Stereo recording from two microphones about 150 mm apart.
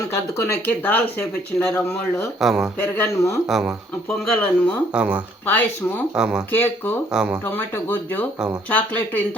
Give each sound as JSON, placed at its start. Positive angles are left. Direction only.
{"t": 0.6, "sound": "speech", "side_deg": 10}
{"t": 2.4, "sound": "speech", "side_deg": 0}
{"t": 2.7, "sound": "speech", "side_deg": 15}
{"t": 3.4, "sound": "speech", "side_deg": -5}
{"t": 4.3, "sound": "speech", "side_deg": 5}
{"t": 4.9, "sound": "speech", "side_deg": -10}
{"t": 5.5, "sound": "speech", "side_deg": 10}
{"t": 6.1, "sound": "speech", "side_deg": -5}
{"t": 6.5, "sound": "speech", "side_deg": 15}
{"t": 7.1, "sound": "speech", "side_deg": -5}
{"t": 7.4, "sound": "speech", "side_deg": 15}